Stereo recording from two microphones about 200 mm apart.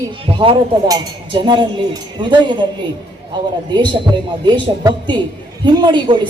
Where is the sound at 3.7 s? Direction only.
25° right (ahead or behind).